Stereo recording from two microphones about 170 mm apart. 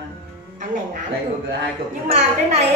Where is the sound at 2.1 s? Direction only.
40° right (ahead or behind).